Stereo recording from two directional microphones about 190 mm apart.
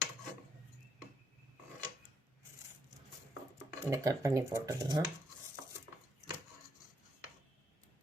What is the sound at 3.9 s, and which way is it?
Speech, 15° right (ahead or behind).